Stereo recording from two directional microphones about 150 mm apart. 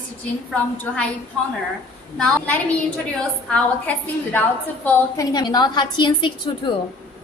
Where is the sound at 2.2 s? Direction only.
10° left (ahead or behind).